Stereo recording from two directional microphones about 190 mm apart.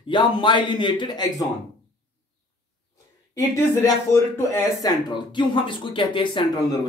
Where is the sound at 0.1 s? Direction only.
25° left (ahead or behind).